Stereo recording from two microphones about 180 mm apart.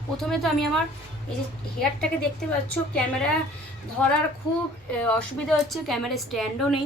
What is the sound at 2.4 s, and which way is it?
Speech, 5° left (ahead or behind).